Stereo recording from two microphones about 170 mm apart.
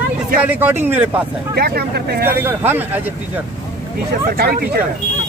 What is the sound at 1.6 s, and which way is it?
Speech, 65° right (ahead or behind).